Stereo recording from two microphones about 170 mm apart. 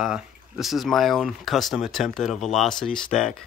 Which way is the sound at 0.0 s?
5° right (ahead or behind).